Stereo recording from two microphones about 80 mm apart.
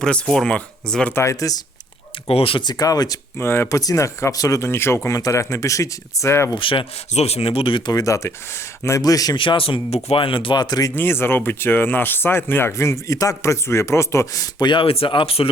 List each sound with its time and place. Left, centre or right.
0.0 s speech: centre
1.1 s a man's voice: left
2.1 s a sound: left
2.6 s speech: left
3.3 s a man's voice: left
3.8 s speech: left
4.7 s a man's voice: left
5.1 s a man's voice: left
6.5 s speech: left
7.9 s a man's voice: left
9.0 s speech: left
9.3 s speech: left
10.9 s a man's voice: left
14.7 s speech: left